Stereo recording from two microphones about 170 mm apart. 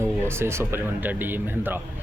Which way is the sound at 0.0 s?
15° right (ahead or behind).